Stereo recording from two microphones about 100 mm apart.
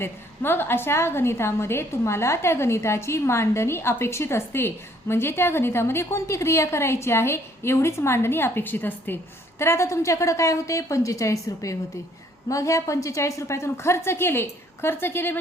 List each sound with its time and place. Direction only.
0.0 s a woman's voice: 20° left (ahead or behind)